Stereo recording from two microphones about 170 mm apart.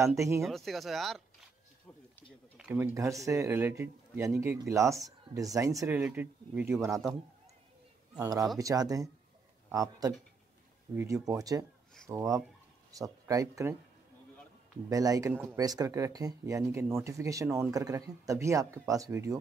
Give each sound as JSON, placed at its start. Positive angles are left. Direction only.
{"t": 0.4, "sound": "speech", "side_deg": 0}
{"t": 2.5, "sound": "speech", "side_deg": -10}
{"t": 5.9, "sound": "speech", "side_deg": -10}
{"t": 8.2, "sound": "speech", "side_deg": -20}
{"t": 14.9, "sound": "speech", "side_deg": -20}